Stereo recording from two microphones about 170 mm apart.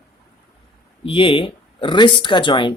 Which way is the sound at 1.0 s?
30° left (ahead or behind).